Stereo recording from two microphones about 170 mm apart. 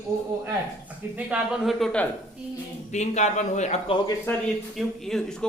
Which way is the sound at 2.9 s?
40° left (ahead or behind).